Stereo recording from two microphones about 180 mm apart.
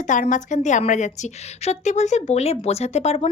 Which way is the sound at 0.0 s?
45° left (ahead or behind).